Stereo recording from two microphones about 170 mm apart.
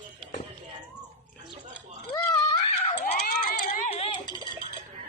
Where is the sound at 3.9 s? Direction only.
35° left (ahead or behind).